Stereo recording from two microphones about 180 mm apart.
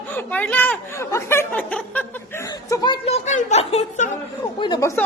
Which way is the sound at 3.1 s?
40° left (ahead or behind).